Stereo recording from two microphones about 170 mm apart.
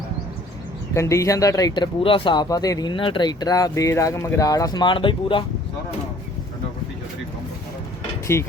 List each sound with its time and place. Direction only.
0.9 s speech: 20° left (ahead or behind)
8.3 s speech: 15° left (ahead or behind)